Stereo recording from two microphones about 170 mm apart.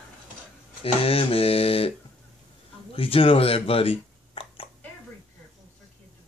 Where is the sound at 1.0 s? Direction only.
35° left (ahead or behind).